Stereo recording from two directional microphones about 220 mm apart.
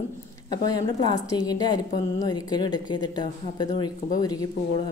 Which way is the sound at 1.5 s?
20° left (ahead or behind).